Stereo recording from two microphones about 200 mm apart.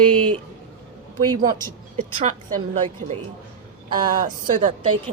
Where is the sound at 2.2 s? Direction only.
40° right (ahead or behind).